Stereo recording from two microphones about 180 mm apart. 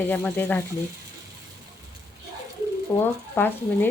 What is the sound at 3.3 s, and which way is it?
Speech, 10° left (ahead or behind).